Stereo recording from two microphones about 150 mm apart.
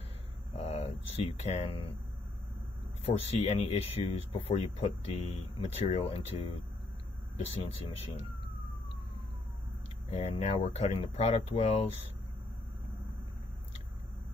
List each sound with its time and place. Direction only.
0.5 s a sound: 45° left (ahead or behind)
3.1 s speech: 45° left (ahead or behind)
10.1 s speech: 45° left (ahead or behind)